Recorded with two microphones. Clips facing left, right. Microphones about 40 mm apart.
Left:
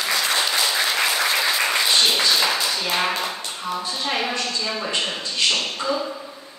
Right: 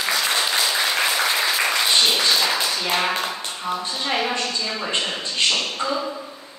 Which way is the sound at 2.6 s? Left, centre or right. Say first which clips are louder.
Even; centre.